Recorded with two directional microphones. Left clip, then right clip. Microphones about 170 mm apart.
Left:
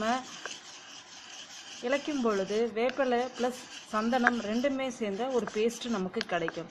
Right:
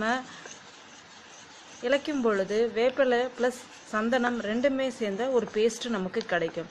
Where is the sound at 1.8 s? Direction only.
10° right (ahead or behind).